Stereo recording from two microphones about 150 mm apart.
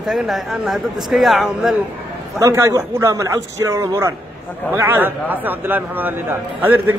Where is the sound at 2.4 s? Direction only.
20° right (ahead or behind).